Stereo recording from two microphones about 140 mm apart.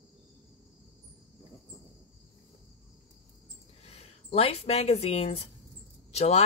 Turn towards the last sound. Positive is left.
turn(degrees=50)  # may be behind; listen again after turning